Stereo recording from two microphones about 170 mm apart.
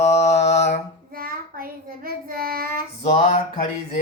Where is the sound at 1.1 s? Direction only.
60° right (ahead or behind).